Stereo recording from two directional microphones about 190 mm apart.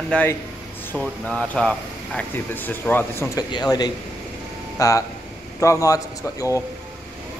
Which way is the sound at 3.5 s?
20° left (ahead or behind).